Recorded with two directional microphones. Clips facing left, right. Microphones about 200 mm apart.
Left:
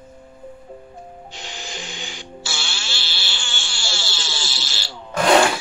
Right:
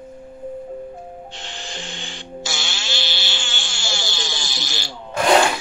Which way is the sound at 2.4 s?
20° right (ahead or behind).